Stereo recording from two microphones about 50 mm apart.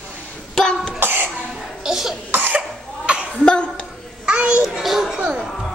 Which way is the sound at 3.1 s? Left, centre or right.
Right.